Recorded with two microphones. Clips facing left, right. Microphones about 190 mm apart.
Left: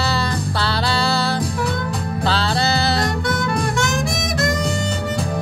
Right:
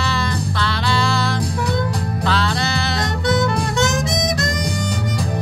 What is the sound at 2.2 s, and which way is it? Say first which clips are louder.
Music: even; 30° left (ahead or behind).